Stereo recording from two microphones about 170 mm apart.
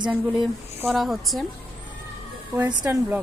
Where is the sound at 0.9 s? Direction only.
Centre (ahead or behind).